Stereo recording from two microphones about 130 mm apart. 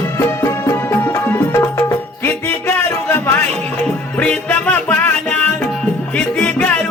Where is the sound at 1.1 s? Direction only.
20° left (ahead or behind).